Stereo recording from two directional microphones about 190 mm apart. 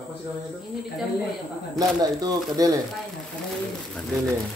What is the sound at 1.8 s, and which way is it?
Speech, 20° right (ahead or behind).